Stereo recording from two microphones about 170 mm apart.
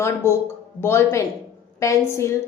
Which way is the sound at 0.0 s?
15° left (ahead or behind).